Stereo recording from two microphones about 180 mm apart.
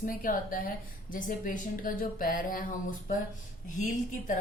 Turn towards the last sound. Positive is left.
turn(degrees=45)  # may be behind; listen again after turning